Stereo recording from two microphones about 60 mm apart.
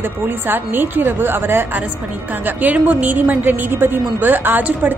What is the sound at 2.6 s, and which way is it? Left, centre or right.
A woman's voice, right.